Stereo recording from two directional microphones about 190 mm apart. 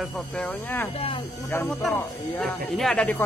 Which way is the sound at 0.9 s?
30° left (ahead or behind).